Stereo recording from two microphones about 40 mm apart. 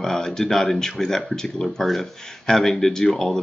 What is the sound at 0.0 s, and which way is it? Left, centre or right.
Speech, centre.